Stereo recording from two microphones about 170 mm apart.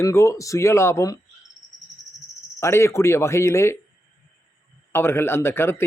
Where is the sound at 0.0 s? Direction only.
15° left (ahead or behind).